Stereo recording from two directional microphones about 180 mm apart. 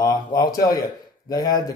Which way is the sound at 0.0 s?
20° left (ahead or behind).